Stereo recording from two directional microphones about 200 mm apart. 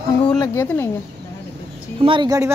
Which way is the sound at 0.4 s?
15° left (ahead or behind).